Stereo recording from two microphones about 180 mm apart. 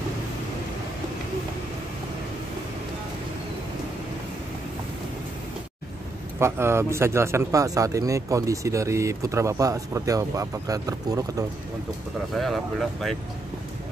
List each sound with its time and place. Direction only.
6.4 s speech: 15° right (ahead or behind)
12.4 s speech: centre (ahead or behind)